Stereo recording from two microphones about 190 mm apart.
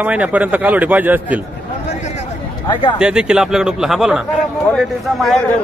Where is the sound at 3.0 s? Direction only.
5° right (ahead or behind).